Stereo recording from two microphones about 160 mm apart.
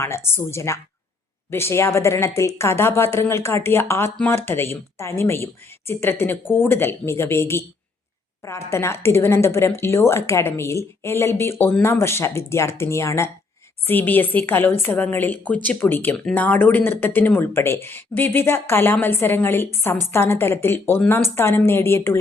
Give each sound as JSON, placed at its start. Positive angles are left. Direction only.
{"t": 0.0, "sound": "a woman's voice", "side_deg": 15}